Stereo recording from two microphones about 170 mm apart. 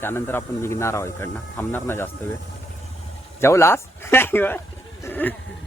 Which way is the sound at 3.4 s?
15° left (ahead or behind).